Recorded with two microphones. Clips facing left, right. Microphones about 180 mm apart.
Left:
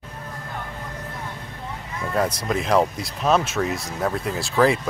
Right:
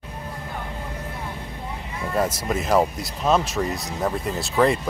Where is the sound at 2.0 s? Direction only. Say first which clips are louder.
Even; 5° right (ahead or behind).